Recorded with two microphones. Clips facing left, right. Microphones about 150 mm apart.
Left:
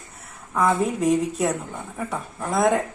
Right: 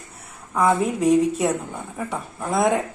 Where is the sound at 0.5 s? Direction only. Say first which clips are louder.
Right 1 dB; centre (ahead or behind).